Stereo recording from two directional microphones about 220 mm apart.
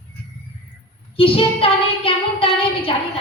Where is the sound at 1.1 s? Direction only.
25° left (ahead or behind).